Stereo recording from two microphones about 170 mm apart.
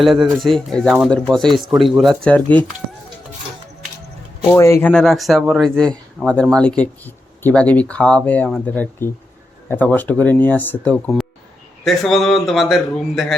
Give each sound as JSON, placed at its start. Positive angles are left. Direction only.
{"t": 0.0, "sound": "speech", "side_deg": 0}
{"t": 4.4, "sound": "speech", "side_deg": 15}